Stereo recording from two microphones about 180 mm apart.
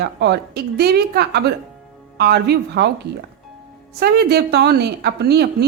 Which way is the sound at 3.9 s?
65° right (ahead or behind).